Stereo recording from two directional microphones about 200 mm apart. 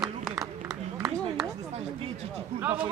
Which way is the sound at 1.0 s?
5° right (ahead or behind).